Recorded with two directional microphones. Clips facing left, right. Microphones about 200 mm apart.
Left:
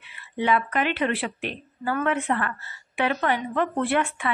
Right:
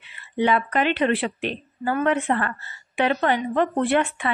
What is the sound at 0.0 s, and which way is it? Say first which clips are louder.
A woman's voice: right 4 dB; 30° right (ahead or behind).